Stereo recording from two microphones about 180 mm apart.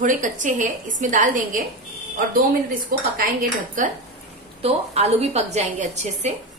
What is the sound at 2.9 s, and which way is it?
Speech, 55° right (ahead or behind).